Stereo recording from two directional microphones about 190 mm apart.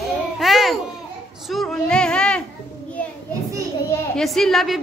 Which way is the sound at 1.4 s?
Centre (ahead or behind).